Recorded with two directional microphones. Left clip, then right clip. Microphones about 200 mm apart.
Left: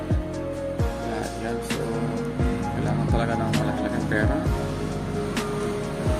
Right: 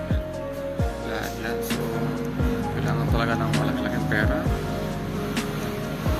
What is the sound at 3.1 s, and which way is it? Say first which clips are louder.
Music: right 1 dB; 25° left (ahead or behind).